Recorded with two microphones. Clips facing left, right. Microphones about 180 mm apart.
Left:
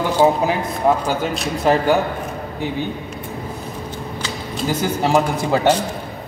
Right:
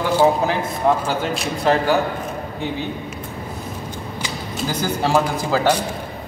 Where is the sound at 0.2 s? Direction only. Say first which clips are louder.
Left 2 dB; 10° left (ahead or behind).